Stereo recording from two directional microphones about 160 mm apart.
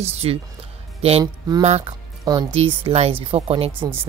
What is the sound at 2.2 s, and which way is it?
A woman's voice, 25° right (ahead or behind).